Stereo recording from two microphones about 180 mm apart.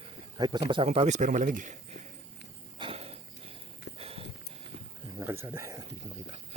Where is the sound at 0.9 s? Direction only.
40° right (ahead or behind).